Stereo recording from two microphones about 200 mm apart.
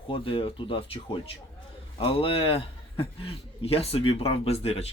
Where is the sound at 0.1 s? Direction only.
25° left (ahead or behind).